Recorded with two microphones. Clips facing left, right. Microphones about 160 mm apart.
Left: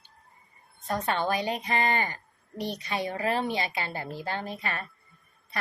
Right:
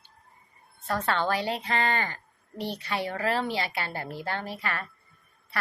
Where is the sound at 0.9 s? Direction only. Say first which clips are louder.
Right 1 dB; 20° left (ahead or behind).